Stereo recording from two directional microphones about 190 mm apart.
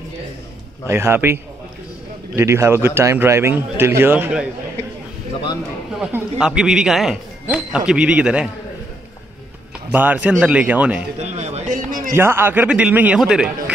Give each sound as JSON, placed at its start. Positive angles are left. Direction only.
{"t": 0.8, "sound": "a man's voice", "side_deg": -15}
{"t": 5.9, "sound": "speech", "side_deg": -5}
{"t": 9.8, "sound": "a man's voice", "side_deg": -10}
{"t": 11.1, "sound": "a sound", "side_deg": -35}
{"t": 12.1, "sound": "a man's voice", "side_deg": -10}